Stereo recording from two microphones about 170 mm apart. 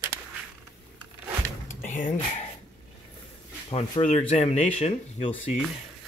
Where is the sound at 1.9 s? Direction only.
50° left (ahead or behind).